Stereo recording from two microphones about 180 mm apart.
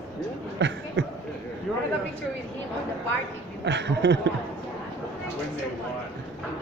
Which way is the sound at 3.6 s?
75° right (ahead or behind).